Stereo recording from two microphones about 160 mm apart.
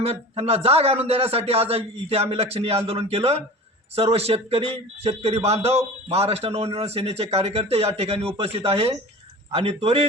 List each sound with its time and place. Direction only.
0.0 s speech: 35° right (ahead or behind)